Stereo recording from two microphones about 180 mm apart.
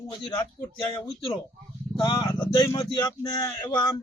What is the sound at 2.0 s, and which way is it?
Speech, 25° left (ahead or behind).